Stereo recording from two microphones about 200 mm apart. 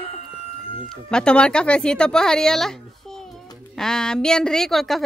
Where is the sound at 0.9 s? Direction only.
5° left (ahead or behind).